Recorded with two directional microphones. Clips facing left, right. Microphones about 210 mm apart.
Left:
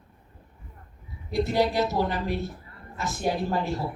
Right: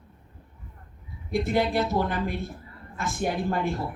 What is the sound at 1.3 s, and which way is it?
Speech, 55° right (ahead or behind).